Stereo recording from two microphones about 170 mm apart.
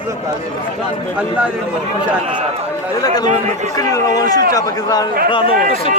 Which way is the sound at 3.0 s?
25° left (ahead or behind).